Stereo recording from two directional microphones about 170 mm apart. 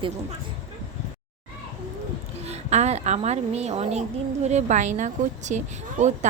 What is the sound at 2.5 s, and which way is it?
A child's voice, 40° right (ahead or behind).